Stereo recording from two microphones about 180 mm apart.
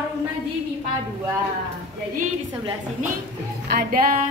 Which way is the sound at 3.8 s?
50° right (ahead or behind).